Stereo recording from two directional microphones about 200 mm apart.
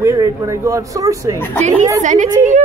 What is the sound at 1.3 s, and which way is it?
Speech, 10° left (ahead or behind).